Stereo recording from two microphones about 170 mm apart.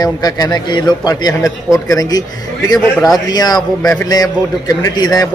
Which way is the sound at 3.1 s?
25° left (ahead or behind).